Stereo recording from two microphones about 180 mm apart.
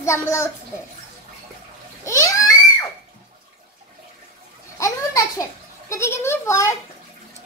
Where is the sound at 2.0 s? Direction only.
15° left (ahead or behind).